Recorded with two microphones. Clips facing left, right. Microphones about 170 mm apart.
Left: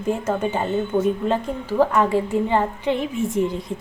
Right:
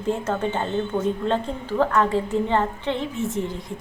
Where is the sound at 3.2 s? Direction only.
20° right (ahead or behind).